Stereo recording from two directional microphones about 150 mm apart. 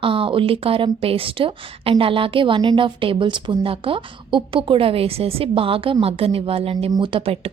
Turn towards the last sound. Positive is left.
turn(degrees=-40)  # may be behind; listen again after turning